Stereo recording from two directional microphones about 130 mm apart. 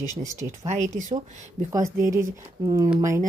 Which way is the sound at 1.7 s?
20° right (ahead or behind).